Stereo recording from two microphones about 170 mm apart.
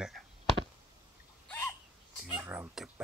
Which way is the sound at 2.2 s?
5° right (ahead or behind).